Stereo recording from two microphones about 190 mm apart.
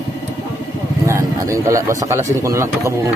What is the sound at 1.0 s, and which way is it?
Speech, 15° right (ahead or behind).